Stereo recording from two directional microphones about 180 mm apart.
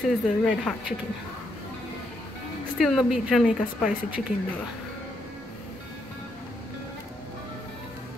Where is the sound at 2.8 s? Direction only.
Centre (ahead or behind).